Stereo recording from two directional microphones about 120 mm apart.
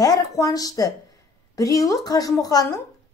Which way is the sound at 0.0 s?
30° left (ahead or behind).